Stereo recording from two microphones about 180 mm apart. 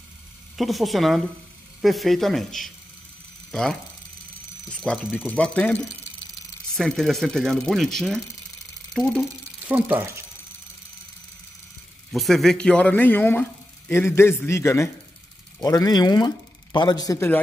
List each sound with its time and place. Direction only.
0.6 s speech: centre (ahead or behind)
4.6 s speech: 5° left (ahead or behind)
6.8 s speech: centre (ahead or behind)
9.7 s speech: 10° right (ahead or behind)
12.1 s speech: centre (ahead or behind); by 17.4 s 15° left (ahead or behind)